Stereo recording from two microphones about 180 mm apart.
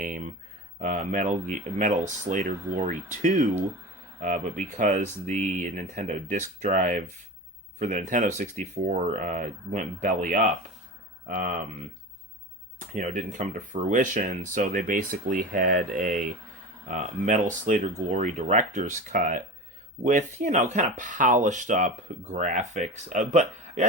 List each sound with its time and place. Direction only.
0.0 s a sound: 45° right (ahead or behind)
0.8 s speech: 45° right (ahead or behind)
12.9 s speech: 45° right (ahead or behind)